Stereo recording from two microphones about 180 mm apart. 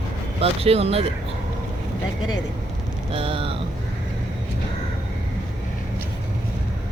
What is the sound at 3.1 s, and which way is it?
Speech, 30° right (ahead or behind).